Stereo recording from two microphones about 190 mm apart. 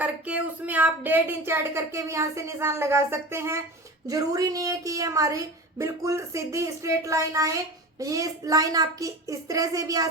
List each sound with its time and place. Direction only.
0.0 s speech: 10° right (ahead or behind)